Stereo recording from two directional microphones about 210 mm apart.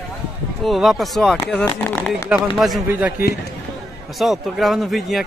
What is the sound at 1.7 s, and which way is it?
Speech, 10° left (ahead or behind).